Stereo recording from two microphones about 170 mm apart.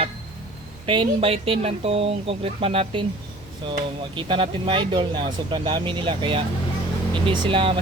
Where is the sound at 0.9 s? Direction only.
30° right (ahead or behind).